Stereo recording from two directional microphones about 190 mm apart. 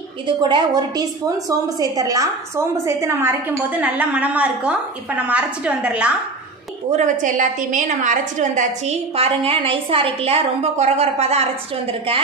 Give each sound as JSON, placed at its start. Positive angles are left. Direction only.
{"t": 0.3, "sound": "a woman's voice", "side_deg": -25}
{"t": 6.9, "sound": "a woman's voice", "side_deg": -40}